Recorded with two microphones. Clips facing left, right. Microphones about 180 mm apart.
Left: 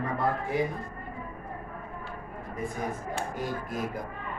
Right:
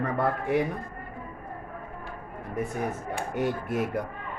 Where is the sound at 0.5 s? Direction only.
65° right (ahead or behind).